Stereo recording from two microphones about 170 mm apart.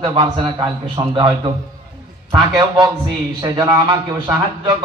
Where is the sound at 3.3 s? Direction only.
20° right (ahead or behind).